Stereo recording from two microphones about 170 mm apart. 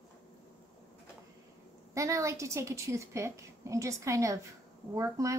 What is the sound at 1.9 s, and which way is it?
A woman's voice, 20° right (ahead or behind).